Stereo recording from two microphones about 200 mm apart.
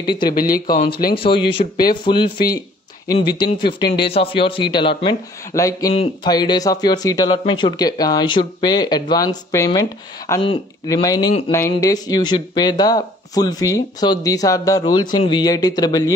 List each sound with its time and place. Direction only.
0.0 s speech: 25° left (ahead or behind)
0.3 s speech: 45° left (ahead or behind)
1.1 s speech: 25° left (ahead or behind)